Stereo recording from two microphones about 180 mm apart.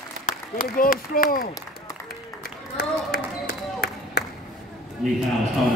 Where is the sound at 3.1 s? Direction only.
55° left (ahead or behind).